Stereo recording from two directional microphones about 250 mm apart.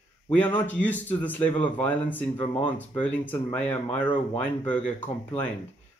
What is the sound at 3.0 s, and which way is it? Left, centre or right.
Speech, centre.